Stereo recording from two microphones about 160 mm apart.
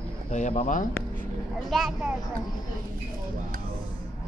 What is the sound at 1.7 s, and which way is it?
Speech, centre (ahead or behind).